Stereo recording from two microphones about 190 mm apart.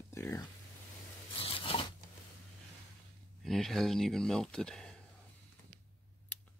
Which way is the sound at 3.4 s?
Centre (ahead or behind).